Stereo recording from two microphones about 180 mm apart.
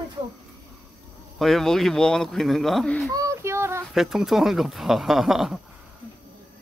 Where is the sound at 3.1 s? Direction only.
15° right (ahead or behind).